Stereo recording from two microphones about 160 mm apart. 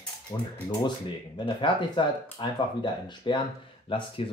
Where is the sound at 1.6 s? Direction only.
30° left (ahead or behind).